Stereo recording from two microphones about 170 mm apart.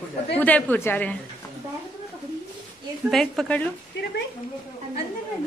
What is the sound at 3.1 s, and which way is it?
Speech, centre (ahead or behind).